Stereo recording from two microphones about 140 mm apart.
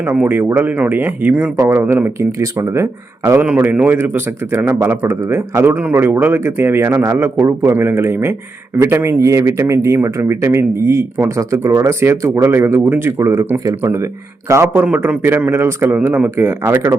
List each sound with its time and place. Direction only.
0.0 s a man's voice: 15° right (ahead or behind)